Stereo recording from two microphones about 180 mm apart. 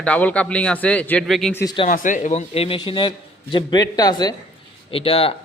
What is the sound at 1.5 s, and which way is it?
Speech, 15° left (ahead or behind).